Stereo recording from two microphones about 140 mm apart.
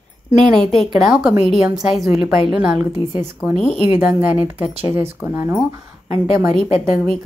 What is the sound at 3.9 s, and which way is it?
A woman's voice, 10° right (ahead or behind).